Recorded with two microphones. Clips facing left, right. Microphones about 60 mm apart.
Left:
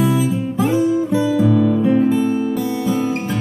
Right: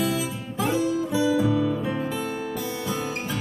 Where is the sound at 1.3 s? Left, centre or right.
Centre.